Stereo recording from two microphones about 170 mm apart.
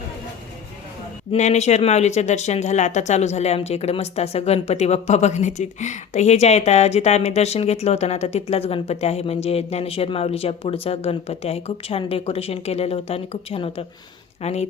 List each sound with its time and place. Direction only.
1.3 s speech: 40° left (ahead or behind)